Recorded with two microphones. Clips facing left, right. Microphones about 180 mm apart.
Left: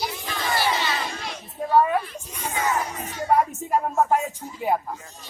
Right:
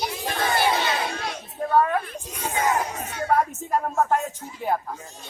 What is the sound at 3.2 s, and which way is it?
Speech, 10° left (ahead or behind).